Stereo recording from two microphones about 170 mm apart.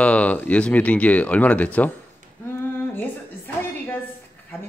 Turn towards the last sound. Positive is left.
turn(degrees=10)  # may be behind; listen again after turning